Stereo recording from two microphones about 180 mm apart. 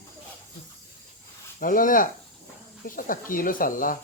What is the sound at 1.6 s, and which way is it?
Speech, 50° left (ahead or behind).